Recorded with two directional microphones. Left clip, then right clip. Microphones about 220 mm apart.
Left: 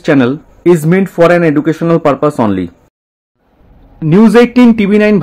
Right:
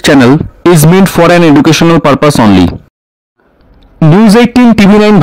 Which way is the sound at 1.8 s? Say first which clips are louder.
Right 4 dB; 40° right (ahead or behind).